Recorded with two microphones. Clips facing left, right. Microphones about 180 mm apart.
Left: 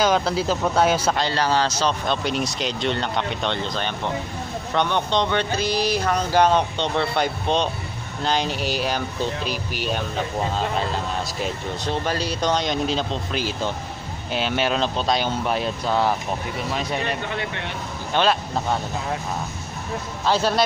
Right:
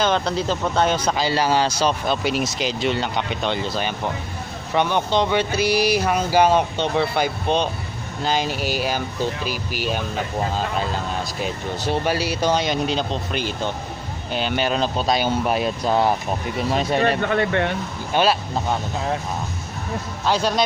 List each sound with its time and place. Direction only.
0.0 s speech: 5° left (ahead or behind)
1.1 s speech: 10° right (ahead or behind)
11.4 s speech: 10° right (ahead or behind)
17.0 s speech: 55° right (ahead or behind)
18.1 s speech: 5° right (ahead or behind)
20.2 s speech: 5° left (ahead or behind)